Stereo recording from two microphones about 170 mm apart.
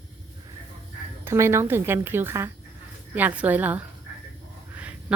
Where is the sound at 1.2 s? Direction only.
15° right (ahead or behind).